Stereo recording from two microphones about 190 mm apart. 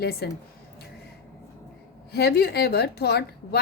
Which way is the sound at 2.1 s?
55° left (ahead or behind).